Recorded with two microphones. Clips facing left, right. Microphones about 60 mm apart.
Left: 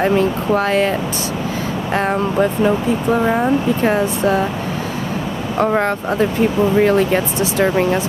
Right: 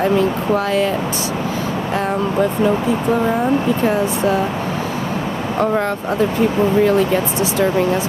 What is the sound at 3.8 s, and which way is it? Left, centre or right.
Speech, left.